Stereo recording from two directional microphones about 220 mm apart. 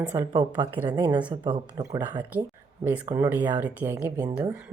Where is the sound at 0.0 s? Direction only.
15° right (ahead or behind).